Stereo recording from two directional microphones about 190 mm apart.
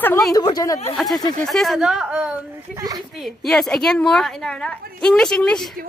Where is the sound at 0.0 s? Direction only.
10° left (ahead or behind).